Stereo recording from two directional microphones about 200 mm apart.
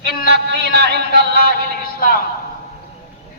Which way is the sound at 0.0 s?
50° left (ahead or behind).